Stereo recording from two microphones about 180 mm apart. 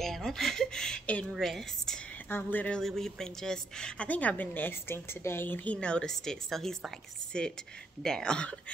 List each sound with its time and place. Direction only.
0.0 s speech: centre (ahead or behind)
8.0 s speech: 5° left (ahead or behind)